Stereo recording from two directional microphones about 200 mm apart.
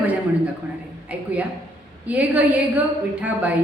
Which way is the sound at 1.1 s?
5° right (ahead or behind).